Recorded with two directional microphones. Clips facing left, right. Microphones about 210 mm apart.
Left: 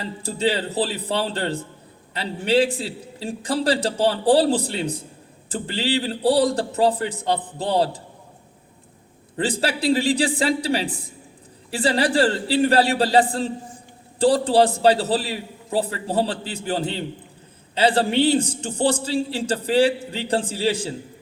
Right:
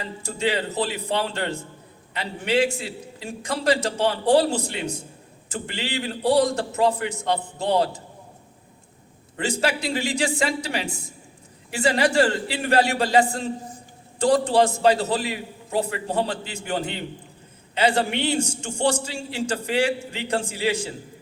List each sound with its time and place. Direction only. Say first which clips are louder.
0.0 s a man's voice: left 3 dB; 35° left (ahead or behind)
9.4 s a man's voice: left 2 dB; 35° left (ahead or behind)